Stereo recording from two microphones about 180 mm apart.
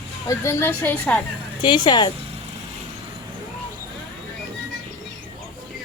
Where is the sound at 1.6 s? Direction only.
25° left (ahead or behind).